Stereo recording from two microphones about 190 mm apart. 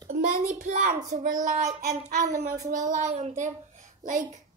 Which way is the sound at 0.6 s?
45° right (ahead or behind).